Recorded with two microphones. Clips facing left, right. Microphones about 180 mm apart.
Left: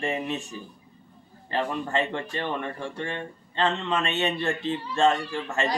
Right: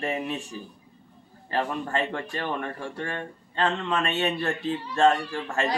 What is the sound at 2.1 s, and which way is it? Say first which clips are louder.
Speech: left 1 dB; 25° left (ahead or behind).